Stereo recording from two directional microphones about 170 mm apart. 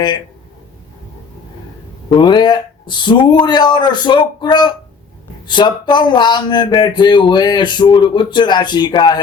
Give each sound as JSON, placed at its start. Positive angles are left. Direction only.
{"t": 2.0, "sound": "speech", "side_deg": 25}